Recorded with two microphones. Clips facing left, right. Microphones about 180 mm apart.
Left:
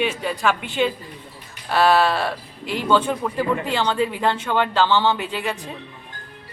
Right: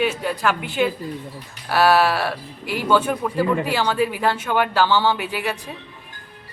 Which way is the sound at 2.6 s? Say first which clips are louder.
Even; 20° left (ahead or behind).